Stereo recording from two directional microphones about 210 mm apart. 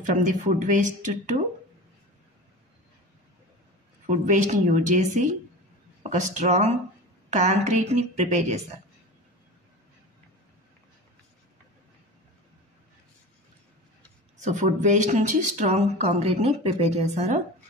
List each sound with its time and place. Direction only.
0.0 s speech: 35° right (ahead or behind)
4.0 s speech: 35° right (ahead or behind)
14.4 s speech: 35° right (ahead or behind)